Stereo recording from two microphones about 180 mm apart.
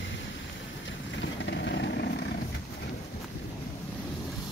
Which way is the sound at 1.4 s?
80° left.